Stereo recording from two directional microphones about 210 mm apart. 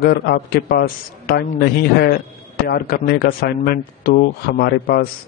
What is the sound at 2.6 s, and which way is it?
Speech, 45° left (ahead or behind).